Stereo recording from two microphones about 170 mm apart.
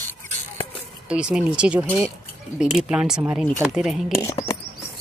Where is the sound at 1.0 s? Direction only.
5° right (ahead or behind).